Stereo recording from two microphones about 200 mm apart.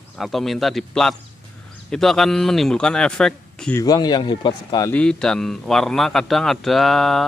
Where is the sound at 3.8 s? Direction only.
20° left (ahead or behind).